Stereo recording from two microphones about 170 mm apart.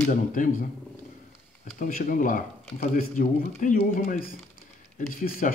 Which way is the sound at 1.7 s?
55° left (ahead or behind).